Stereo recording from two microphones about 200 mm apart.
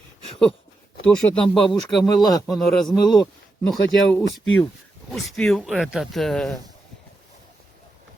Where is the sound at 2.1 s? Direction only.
20° left (ahead or behind).